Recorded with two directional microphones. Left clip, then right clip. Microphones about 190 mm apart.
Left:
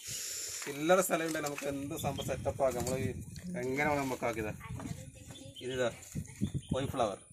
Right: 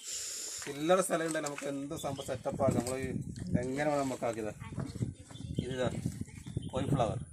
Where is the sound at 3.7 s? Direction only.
35° right (ahead or behind).